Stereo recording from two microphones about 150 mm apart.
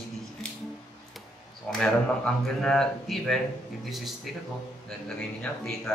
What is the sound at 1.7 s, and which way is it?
Speech, 5° left (ahead or behind).